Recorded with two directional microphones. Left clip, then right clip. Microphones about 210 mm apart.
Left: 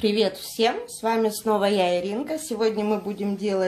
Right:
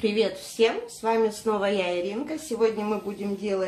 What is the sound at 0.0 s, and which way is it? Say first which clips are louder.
Speech: left 2 dB; 50° left (ahead or behind).